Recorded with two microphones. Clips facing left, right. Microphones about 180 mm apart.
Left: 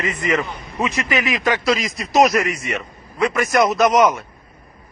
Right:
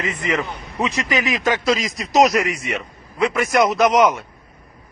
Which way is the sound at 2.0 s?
15° right (ahead or behind).